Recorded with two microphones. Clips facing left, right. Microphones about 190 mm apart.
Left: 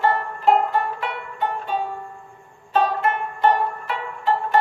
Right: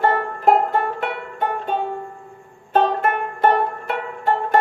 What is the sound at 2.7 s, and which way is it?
Banjo, 50° right (ahead or behind).